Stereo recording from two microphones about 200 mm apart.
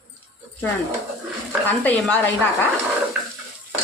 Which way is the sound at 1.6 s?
10° left (ahead or behind).